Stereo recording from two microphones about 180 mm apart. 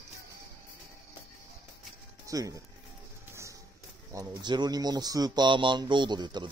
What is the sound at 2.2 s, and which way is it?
Speech, 20° right (ahead or behind).